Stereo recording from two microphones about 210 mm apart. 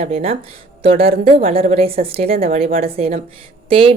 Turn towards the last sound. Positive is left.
turn(degrees=-25)  # may be behind; listen again after turning